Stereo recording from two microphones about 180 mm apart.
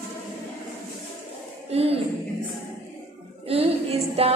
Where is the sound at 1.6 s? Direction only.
35° right (ahead or behind).